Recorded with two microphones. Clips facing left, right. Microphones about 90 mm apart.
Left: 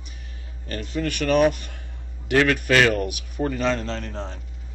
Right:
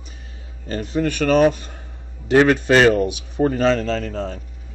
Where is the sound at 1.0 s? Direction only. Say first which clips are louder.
Right 5 dB; 40° right (ahead or behind).